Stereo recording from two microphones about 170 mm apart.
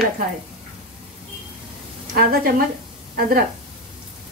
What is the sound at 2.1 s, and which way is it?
A woman's voice, 60° right (ahead or behind).